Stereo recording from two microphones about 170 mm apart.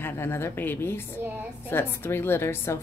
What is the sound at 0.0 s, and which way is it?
Speech, 15° left (ahead or behind).